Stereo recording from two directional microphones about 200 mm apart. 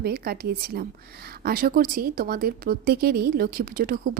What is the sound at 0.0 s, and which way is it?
A woman's voice, 50° right (ahead or behind).